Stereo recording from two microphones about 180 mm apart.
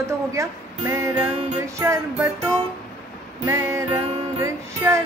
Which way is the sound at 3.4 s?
15° right (ahead or behind).